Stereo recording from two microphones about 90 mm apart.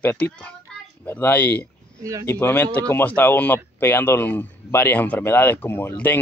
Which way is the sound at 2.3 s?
25° left (ahead or behind).